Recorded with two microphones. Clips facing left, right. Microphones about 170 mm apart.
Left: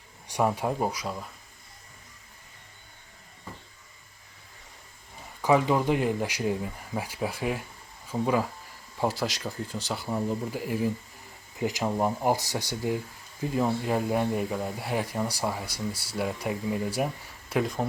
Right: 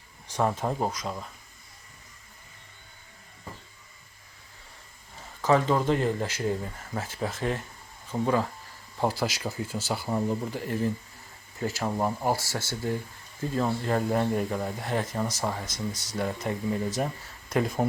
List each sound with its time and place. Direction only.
0.3 s speech: 15° left (ahead or behind)
5.4 s speech: 10° left (ahead or behind)
17.5 s speech: centre (ahead or behind)